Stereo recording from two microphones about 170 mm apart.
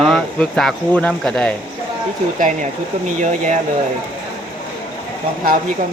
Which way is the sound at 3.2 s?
45° right (ahead or behind).